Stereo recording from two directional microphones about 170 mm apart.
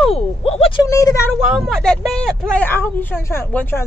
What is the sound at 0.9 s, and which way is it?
Speech, 15° left (ahead or behind).